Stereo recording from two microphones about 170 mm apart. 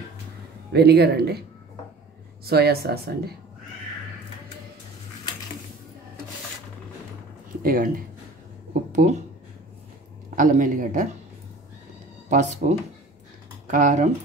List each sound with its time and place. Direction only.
0.7 s speech: 70° right (ahead or behind)
2.4 s speech: 65° right (ahead or behind)
7.6 s speech: 55° right (ahead or behind)
8.9 s speech: 45° right (ahead or behind)
10.3 s a man's voice: 50° right (ahead or behind)
12.3 s a man's voice: 45° right (ahead or behind)